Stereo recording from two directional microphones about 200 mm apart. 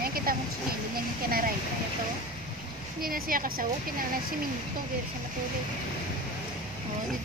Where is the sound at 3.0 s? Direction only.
45° right (ahead or behind).